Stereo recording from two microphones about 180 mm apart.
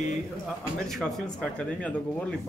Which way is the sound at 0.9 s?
Centre (ahead or behind).